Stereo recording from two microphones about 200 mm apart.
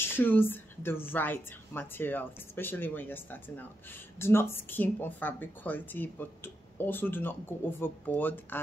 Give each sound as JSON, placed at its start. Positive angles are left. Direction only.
{"t": 0.0, "sound": "a woman's voice", "side_deg": 10}